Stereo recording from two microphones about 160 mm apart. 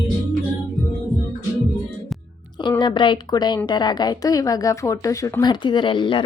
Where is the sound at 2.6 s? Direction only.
30° left (ahead or behind).